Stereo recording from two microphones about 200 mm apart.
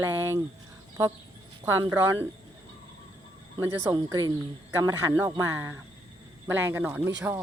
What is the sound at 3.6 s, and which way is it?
Speech, 15° right (ahead or behind).